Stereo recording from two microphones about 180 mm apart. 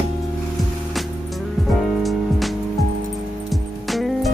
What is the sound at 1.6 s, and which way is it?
Music, centre (ahead or behind).